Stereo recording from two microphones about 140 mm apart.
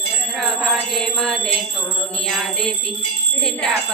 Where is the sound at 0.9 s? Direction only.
5° left (ahead or behind).